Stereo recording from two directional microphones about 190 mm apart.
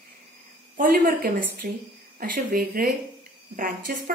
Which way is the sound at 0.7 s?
50° right (ahead or behind).